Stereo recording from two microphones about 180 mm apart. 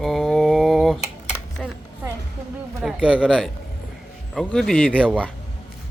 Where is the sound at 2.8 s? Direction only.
5° right (ahead or behind).